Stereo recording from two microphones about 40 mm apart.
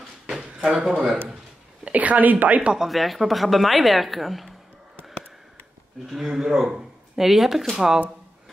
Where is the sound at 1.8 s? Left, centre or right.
Right.